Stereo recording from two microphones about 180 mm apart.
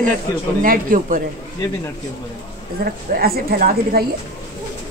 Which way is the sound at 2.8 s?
55° right (ahead or behind).